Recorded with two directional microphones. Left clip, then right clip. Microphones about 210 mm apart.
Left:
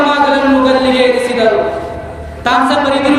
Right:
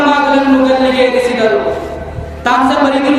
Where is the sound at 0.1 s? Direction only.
Centre (ahead or behind).